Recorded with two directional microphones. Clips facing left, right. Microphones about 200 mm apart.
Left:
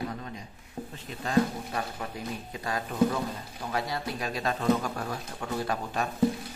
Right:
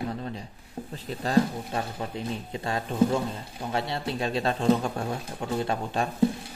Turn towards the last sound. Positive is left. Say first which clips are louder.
# right 3 dB
turn(degrees=-25)  # may be behind; listen again after turning